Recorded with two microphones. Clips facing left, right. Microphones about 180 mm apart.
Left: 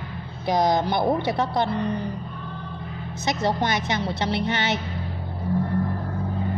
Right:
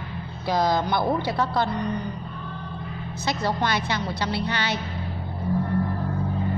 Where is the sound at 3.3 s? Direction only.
20° left (ahead or behind).